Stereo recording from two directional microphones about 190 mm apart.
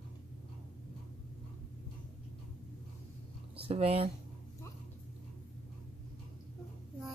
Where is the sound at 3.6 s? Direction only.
30° right (ahead or behind).